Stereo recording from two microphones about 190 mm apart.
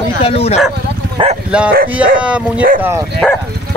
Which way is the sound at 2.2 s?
5° right (ahead or behind).